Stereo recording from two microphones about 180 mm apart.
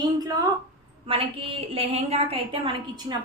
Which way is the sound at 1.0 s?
30° right (ahead or behind).